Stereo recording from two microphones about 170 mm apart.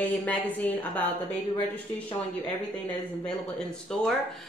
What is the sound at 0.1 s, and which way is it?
Speech, 10° left (ahead or behind).